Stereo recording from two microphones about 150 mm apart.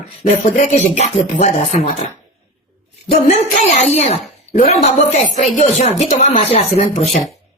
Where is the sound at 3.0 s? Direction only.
45° left (ahead or behind).